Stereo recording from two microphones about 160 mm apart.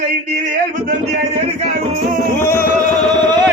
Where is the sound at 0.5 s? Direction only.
50° right (ahead or behind).